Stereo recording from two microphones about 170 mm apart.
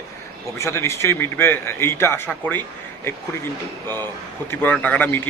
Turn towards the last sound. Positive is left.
turn(degrees=10)  # may be behind; listen again after turning